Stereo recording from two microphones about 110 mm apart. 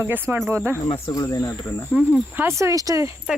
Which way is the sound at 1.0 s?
30° left (ahead or behind).